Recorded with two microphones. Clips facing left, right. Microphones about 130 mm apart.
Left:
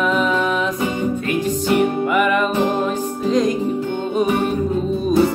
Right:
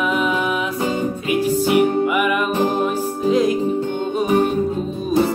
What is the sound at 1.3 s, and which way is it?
Music, 10° right (ahead or behind).